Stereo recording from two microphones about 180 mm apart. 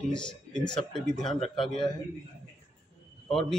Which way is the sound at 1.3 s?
30° left (ahead or behind).